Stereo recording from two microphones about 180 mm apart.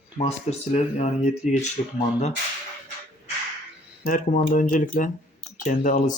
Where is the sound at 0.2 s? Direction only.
35° left (ahead or behind).